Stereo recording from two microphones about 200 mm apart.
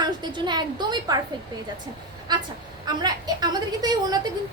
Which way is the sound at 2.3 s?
20° right (ahead or behind).